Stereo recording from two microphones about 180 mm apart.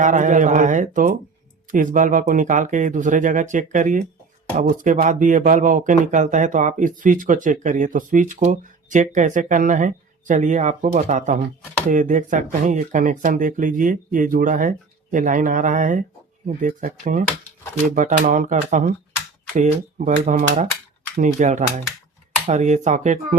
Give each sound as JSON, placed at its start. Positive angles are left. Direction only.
{"t": 0.0, "sound": "speech", "side_deg": -45}